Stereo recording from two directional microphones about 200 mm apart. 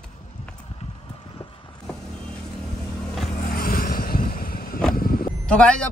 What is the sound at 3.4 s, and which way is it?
Vehicle, 45° left (ahead or behind).